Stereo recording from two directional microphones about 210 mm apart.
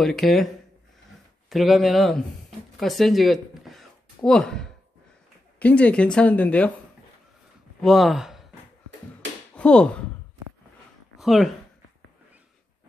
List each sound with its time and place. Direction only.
0.0 s speech: centre (ahead or behind)
1.5 s speech: centre (ahead or behind)
7.8 s speech: centre (ahead or behind)
9.6 s speech: 5° left (ahead or behind)
11.1 s speech: centre (ahead or behind)